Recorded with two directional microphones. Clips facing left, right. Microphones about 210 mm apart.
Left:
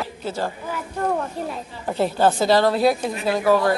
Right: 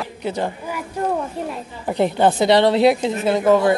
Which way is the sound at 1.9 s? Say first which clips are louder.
Right 2 dB; 20° right (ahead or behind).